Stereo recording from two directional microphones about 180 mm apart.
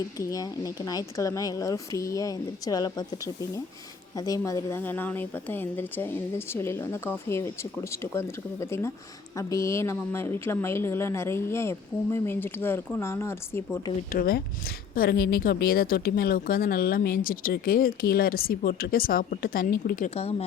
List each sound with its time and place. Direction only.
0.2 s speech: 20° left (ahead or behind)
4.1 s a woman's voice: 20° left (ahead or behind)
14.1 s a woman's voice: 55° left (ahead or behind)